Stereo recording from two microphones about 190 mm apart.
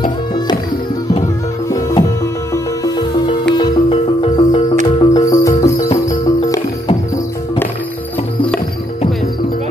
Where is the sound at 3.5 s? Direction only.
30° left (ahead or behind).